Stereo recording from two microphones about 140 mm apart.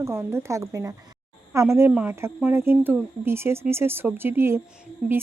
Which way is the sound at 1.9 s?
10° right (ahead or behind).